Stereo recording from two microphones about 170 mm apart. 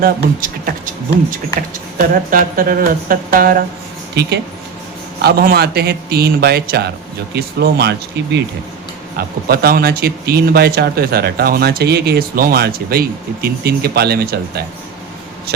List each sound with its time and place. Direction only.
0.0 s speech: 55° right (ahead or behind)
2.0 s speech: 55° right (ahead or behind)
4.1 s speech: 75° right (ahead or behind)
5.2 s speech: 65° right (ahead or behind); by 8.4 s 85° right
9.1 s speech: 65° right (ahead or behind)